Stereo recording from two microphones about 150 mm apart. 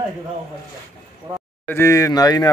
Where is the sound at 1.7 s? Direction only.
20° left (ahead or behind).